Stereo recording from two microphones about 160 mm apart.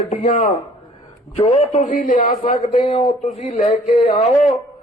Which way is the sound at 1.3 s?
40° left (ahead or behind).